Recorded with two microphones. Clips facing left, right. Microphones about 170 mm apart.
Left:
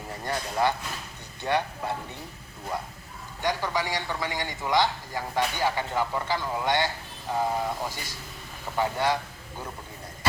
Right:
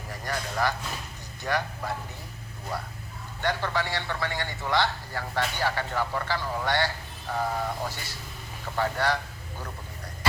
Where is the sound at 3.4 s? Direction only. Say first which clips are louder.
Even; 15° left (ahead or behind).